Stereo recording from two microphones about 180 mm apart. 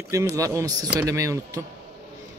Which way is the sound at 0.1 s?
15° right (ahead or behind).